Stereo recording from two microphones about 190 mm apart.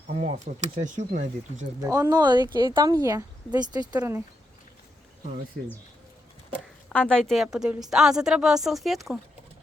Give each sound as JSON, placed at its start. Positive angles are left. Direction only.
{"t": 0.1, "sound": "speech", "side_deg": -40}
{"t": 1.8, "sound": "speech", "side_deg": -20}
{"t": 6.9, "sound": "a woman's voice", "side_deg": 5}